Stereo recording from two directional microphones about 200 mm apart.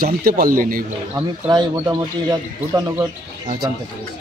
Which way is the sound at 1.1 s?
20° right (ahead or behind).